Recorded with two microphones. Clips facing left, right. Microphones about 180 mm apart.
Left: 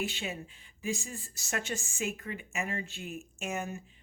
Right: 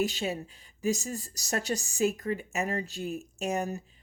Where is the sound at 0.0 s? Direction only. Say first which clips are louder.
Right 6 dB; 40° right (ahead or behind).